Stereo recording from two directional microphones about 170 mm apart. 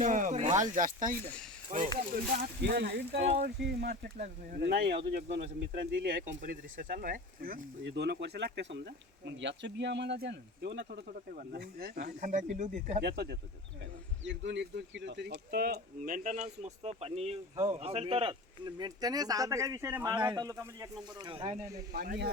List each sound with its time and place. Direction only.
0.0 s speech: 50° right (ahead or behind)
2.6 s speech: 75° right (ahead or behind); by 13.0 s 45° right (ahead or behind)
13.0 s speech: 75° right (ahead or behind)
14.3 s speech: 90° right; by 21.6 s 35° right (ahead or behind)
21.9 s speech: 65° right (ahead or behind)